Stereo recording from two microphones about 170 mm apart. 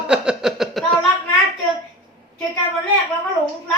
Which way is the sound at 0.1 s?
5° right (ahead or behind).